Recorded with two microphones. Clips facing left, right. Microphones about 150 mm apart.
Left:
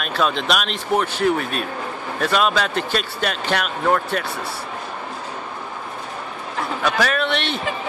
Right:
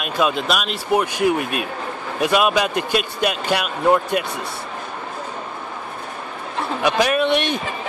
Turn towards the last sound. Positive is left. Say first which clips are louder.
# right 4 dB
turn(degrees=-15)  # may be behind; listen again after turning